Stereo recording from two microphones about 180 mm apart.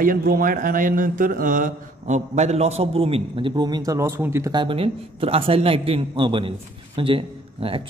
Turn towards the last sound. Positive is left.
turn(degrees=-30)  # may be behind; listen again after turning